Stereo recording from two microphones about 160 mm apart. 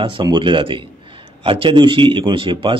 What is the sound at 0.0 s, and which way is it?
A man's voice, 30° right (ahead or behind).